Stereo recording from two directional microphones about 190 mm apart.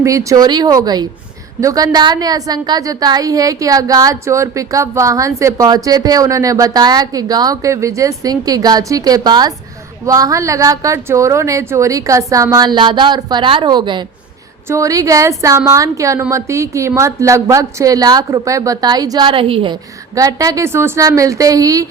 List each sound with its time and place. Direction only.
0.0 s a woman's voice: 15° right (ahead or behind)